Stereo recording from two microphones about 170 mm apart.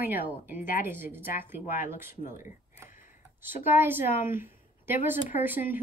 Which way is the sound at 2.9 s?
55° left (ahead or behind).